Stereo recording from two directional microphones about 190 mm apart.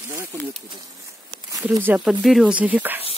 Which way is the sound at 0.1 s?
10° right (ahead or behind).